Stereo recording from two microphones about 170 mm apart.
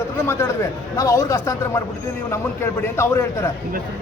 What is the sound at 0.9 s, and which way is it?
Speech, 20° left (ahead or behind).